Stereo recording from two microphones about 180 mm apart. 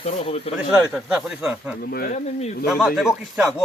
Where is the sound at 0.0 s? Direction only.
35° left (ahead or behind).